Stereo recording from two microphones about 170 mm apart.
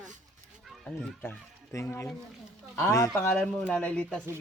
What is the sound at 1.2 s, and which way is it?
Speech, 15° left (ahead or behind).